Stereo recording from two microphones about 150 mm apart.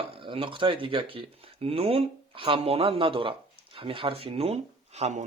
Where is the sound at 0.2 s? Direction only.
35° right (ahead or behind).